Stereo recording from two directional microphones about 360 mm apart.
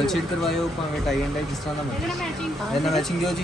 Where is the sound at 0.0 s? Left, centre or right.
Centre.